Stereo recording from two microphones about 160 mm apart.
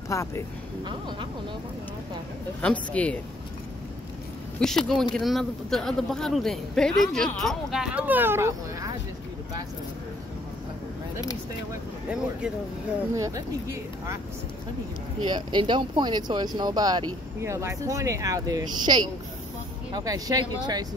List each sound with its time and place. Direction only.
0.1 s speech: 20° left (ahead or behind)
2.6 s speech: 10° left (ahead or behind)
4.6 s speech: 5° left (ahead or behind); by 8.9 s 15° right (ahead or behind)
13.1 s speech: 20° right (ahead or behind)
15.2 s speech: 30° right (ahead or behind)